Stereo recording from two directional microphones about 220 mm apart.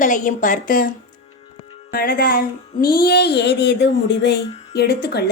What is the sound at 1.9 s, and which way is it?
Music, 40° left (ahead or behind).